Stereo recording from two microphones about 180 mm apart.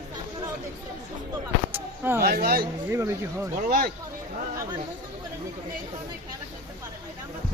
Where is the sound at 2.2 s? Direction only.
60° right (ahead or behind).